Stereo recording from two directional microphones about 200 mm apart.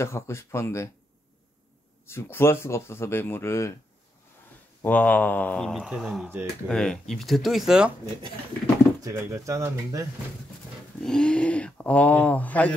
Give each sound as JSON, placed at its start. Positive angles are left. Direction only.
{"t": 0.0, "sound": "speech", "side_deg": 15}
{"t": 2.0, "sound": "speech", "side_deg": 10}
{"t": 4.8, "sound": "speech", "side_deg": 10}
{"t": 9.0, "sound": "speech", "side_deg": -15}
{"t": 11.0, "sound": "speech", "side_deg": 5}